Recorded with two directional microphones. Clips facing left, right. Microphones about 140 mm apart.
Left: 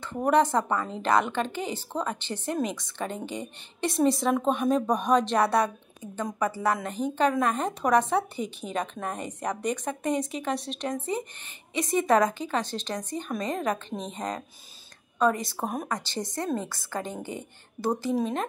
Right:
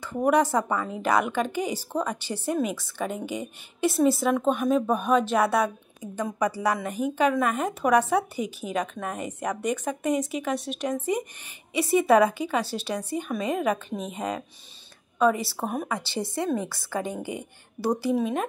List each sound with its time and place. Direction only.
0.0 s a woman's voice: 10° right (ahead or behind)
10.1 s speech: 30° left (ahead or behind)
10.7 s a woman's voice: 10° right (ahead or behind)